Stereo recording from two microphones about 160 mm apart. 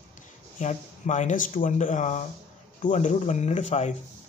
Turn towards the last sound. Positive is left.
turn(degrees=45)  # may be behind; listen again after turning